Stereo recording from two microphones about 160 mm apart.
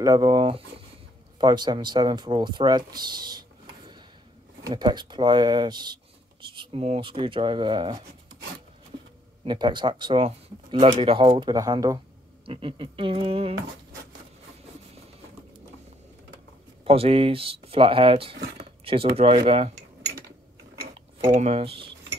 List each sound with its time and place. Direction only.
0.0 s speech: 25° right (ahead or behind)
4.6 s speech: 25° right (ahead or behind)
6.6 s speech: 40° right (ahead or behind)
9.4 s speech: 30° right (ahead or behind)
12.4 s speech: 35° right (ahead or behind)
16.8 s speech: 35° right (ahead or behind)
18.3 s speech: 90° right
18.9 s speech: 35° right (ahead or behind)
21.4 s speech: 40° right (ahead or behind)